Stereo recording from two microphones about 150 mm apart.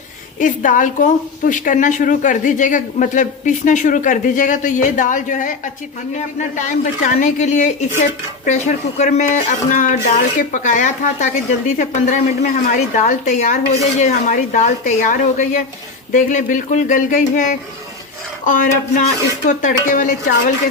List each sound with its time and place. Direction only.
0.3 s a woman's voice: 60° left (ahead or behind)